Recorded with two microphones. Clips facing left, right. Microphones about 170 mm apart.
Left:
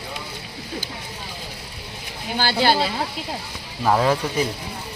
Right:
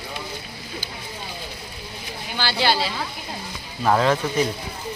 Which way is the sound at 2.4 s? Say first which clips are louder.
Left 3 dB; 45° left (ahead or behind).